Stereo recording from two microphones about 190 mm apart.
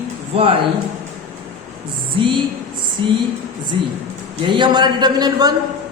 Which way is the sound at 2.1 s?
25° right (ahead or behind).